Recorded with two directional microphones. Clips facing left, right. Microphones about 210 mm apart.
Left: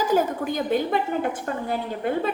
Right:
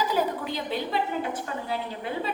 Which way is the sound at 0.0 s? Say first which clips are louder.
Left 4 dB; 45° left (ahead or behind).